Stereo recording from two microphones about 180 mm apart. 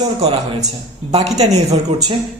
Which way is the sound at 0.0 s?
30° right (ahead or behind).